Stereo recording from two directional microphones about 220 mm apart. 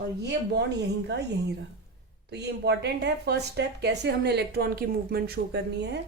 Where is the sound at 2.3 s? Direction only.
50° right (ahead or behind).